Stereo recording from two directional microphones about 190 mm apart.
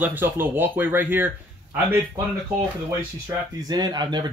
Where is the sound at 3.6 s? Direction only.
20° right (ahead or behind).